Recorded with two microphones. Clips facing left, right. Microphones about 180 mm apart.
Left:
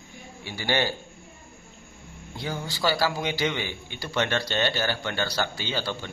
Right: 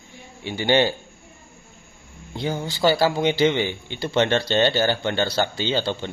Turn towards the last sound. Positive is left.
turn(degrees=-25)  # may be behind; listen again after turning